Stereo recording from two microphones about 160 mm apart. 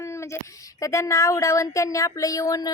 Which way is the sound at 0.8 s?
20° left (ahead or behind).